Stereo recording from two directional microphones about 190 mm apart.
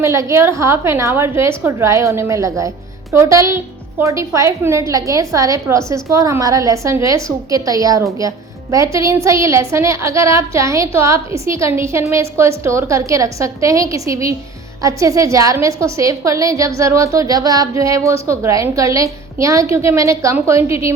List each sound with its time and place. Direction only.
0.0 s a woman's voice: 15° right (ahead or behind)